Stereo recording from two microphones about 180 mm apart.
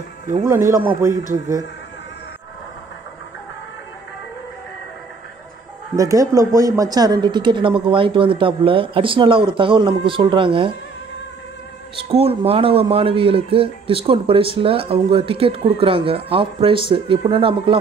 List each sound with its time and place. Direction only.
0.4 s a man's voice: 15° right (ahead or behind)
5.9 s speech: 20° right (ahead or behind)
12.0 s speech: 30° right (ahead or behind)